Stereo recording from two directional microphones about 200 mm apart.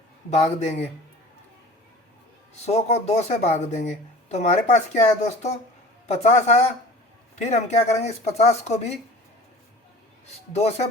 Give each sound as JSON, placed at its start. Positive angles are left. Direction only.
{"t": 0.3, "sound": "speech", "side_deg": 35}
{"t": 2.6, "sound": "speech", "side_deg": 35}